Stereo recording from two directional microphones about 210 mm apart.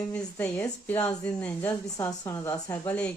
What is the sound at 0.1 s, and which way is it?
Speech, 10° left (ahead or behind).